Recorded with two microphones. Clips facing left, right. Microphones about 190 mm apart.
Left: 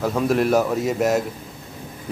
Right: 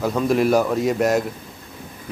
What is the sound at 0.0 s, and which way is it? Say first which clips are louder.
A man's voice: right 1 dB; centre (ahead or behind).